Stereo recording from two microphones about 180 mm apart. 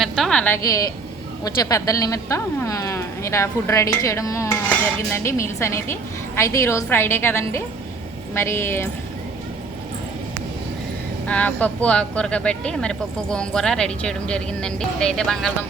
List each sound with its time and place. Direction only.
0.0 s a sound: 5° left (ahead or behind); by 0.9 s 20° left (ahead or behind)
1.5 s a woman's voice: 20° left (ahead or behind)
11.3 s speech: 5° left (ahead or behind)